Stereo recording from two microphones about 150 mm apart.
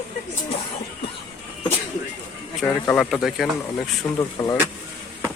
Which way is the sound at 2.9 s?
Centre (ahead or behind).